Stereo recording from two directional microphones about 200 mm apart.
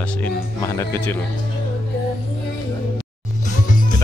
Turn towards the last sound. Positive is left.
turn(degrees=40)  # may be behind; listen again after turning